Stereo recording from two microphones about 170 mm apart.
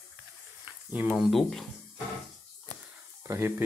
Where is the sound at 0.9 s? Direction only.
5° right (ahead or behind).